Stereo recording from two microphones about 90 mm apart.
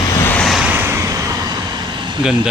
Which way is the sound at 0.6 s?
15° right (ahead or behind).